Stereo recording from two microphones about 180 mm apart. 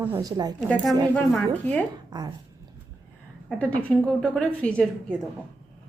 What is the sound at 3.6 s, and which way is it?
A woman's voice, 5° left (ahead or behind).